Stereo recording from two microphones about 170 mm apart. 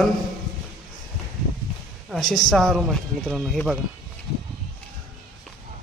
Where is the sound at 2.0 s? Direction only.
Centre (ahead or behind).